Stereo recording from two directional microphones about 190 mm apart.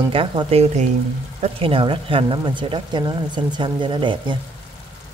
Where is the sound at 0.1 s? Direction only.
25° right (ahead or behind).